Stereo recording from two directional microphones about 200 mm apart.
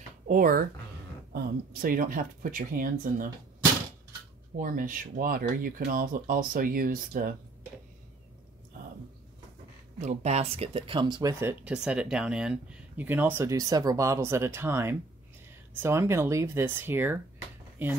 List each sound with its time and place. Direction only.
0.3 s speech: 45° right (ahead or behind)
4.6 s speech: 45° right (ahead or behind)
9.9 s speech: 35° right (ahead or behind); by 17.2 s 10° right (ahead or behind)